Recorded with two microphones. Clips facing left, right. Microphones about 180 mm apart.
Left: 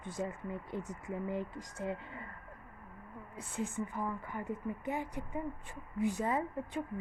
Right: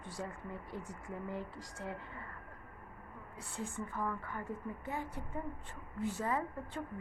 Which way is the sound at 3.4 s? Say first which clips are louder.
Left 5 dB; 20° left (ahead or behind).